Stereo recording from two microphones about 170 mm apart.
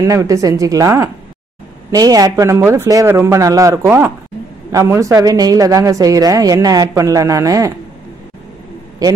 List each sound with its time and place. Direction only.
0.0 s a woman's voice: 20° right (ahead or behind)